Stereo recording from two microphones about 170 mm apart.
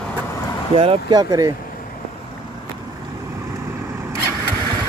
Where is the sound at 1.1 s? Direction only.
20° right (ahead or behind).